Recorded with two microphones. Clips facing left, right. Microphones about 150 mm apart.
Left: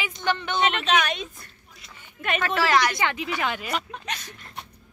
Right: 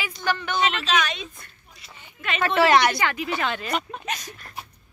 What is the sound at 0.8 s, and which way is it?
Speech, 55° left (ahead or behind).